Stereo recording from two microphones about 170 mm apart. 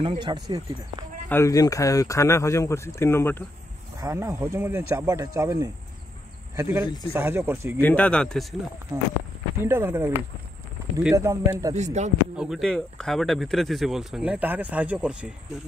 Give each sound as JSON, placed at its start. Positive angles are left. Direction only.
{"t": 0.0, "sound": "speech", "side_deg": -30}
{"t": 1.3, "sound": "speech", "side_deg": 20}
{"t": 4.0, "sound": "speech", "side_deg": -15}
{"t": 7.8, "sound": "speech", "side_deg": 10}
{"t": 9.6, "sound": "speech", "side_deg": -15}
{"t": 11.7, "sound": "speech", "side_deg": -45}
{"t": 12.4, "sound": "speech", "side_deg": 0}